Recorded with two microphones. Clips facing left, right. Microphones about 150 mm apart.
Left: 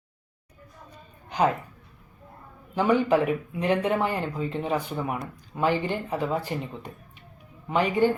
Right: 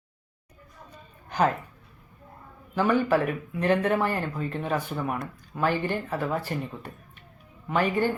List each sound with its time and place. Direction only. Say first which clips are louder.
1.3 s a woman's voice: left 1 dB; 15° left (ahead or behind)
2.7 s speech: left 1 dB; 15° left (ahead or behind)